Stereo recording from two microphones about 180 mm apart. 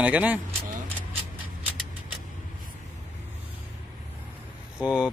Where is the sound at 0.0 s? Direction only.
10° right (ahead or behind).